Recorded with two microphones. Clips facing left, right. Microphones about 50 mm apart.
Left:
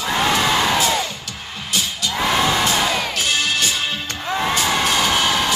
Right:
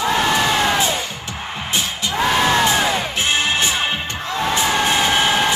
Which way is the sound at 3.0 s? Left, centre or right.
Right.